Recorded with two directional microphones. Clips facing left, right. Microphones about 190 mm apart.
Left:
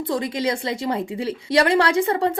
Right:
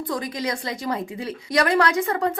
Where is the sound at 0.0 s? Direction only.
25° left (ahead or behind).